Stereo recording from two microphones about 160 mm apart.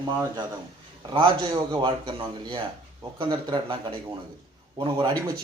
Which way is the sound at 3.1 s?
30° right (ahead or behind).